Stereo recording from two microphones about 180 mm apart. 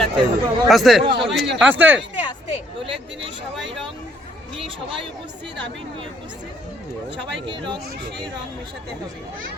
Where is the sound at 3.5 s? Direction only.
Centre (ahead or behind).